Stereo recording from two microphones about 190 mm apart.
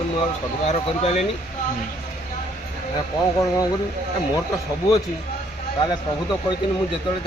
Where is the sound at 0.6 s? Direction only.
35° left (ahead or behind).